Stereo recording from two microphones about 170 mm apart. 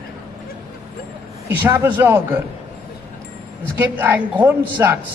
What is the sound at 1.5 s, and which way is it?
Speech, 15° right (ahead or behind).